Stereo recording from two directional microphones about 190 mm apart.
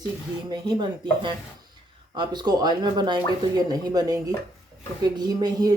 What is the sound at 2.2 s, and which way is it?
Speech, 20° right (ahead or behind).